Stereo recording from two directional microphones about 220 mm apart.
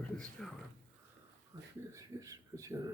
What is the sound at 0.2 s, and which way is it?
Speech, centre (ahead or behind).